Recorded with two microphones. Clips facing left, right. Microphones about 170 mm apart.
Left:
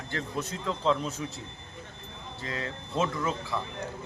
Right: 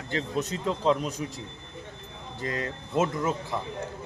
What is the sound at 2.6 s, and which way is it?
Speech, 20° right (ahead or behind).